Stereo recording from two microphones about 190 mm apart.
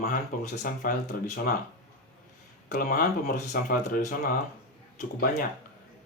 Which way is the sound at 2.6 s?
45° left (ahead or behind).